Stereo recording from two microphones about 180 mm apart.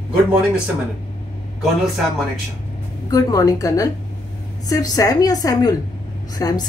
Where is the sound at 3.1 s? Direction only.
20° left (ahead or behind).